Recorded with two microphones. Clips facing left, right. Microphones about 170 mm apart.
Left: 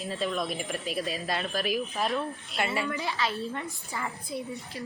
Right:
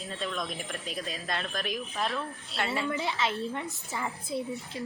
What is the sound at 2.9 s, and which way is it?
A woman's voice, 20° right (ahead or behind).